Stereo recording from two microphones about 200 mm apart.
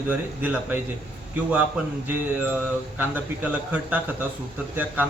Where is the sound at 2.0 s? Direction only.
10° right (ahead or behind).